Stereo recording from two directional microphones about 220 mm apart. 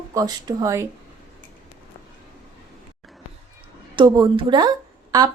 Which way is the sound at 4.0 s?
20° right (ahead or behind).